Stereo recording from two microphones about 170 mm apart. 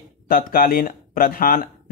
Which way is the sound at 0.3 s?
55° left (ahead or behind).